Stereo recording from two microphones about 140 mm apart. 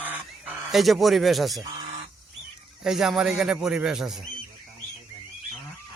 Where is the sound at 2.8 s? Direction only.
5° right (ahead or behind).